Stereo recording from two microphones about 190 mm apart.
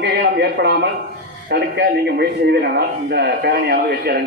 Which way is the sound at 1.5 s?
60° right (ahead or behind).